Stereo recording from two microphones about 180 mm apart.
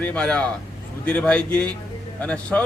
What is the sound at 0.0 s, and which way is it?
A man's voice, 5° left (ahead or behind).